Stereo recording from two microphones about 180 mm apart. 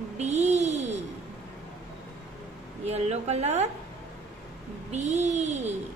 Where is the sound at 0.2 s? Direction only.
40° right (ahead or behind).